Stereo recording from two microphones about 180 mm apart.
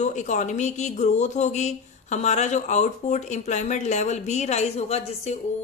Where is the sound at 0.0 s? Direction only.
40° left (ahead or behind).